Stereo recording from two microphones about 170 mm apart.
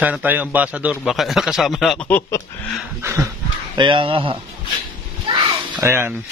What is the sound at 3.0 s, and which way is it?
Speech, 15° right (ahead or behind).